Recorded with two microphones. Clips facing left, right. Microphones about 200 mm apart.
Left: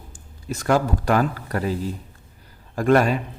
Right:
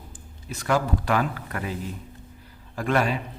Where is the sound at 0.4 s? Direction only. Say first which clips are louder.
Left 4 dB; 45° left (ahead or behind).